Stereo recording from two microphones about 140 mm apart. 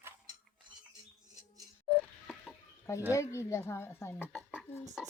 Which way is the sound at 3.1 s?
20° left (ahead or behind).